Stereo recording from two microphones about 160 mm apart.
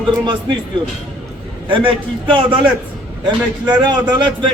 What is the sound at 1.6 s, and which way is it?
Speech, 30° right (ahead or behind).